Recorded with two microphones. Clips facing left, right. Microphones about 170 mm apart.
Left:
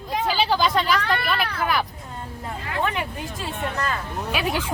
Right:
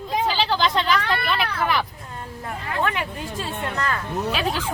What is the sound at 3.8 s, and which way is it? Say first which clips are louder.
Speech: right 2 dB; 15° left (ahead or behind).